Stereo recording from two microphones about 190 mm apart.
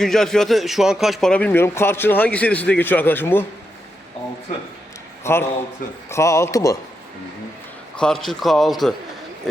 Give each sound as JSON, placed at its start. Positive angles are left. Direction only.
{"t": 0.0, "sound": "a man's voice", "side_deg": 0}
{"t": 5.2, "sound": "a man's voice", "side_deg": 10}
{"t": 7.9, "sound": "a man's voice", "side_deg": 5}